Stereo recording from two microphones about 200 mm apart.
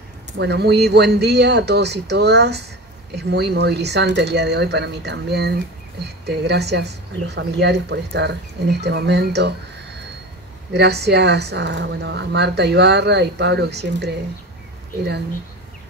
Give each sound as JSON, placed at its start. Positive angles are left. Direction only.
{"t": 0.4, "sound": "a woman's voice", "side_deg": -55}
{"t": 10.7, "sound": "a woman's voice", "side_deg": -55}